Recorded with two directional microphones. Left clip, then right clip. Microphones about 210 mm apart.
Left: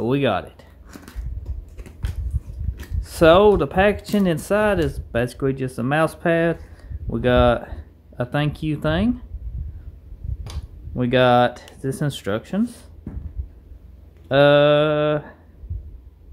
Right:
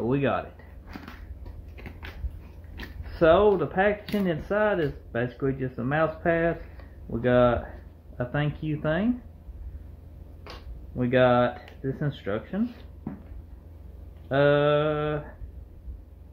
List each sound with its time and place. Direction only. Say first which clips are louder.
0.0 s speech: left 5 dB; 45° left (ahead or behind)
3.2 s speech: left 6 dB; 50° left (ahead or behind)
11.0 s speech: left 5 dB; 50° left (ahead or behind)
14.3 s speech: left 7 dB; 50° left (ahead or behind)